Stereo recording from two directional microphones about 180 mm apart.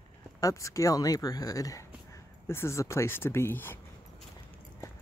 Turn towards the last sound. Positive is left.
turn(degrees=10)  # may be behind; listen again after turning